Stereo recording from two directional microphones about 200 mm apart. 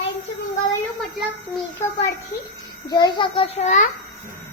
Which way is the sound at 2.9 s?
20° left (ahead or behind).